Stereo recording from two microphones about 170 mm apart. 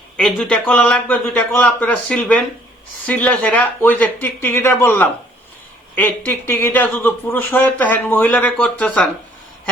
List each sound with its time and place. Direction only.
0.2 s speech: 5° left (ahead or behind)